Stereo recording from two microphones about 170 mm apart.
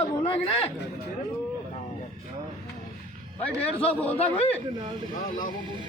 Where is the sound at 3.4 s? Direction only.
10° left (ahead or behind).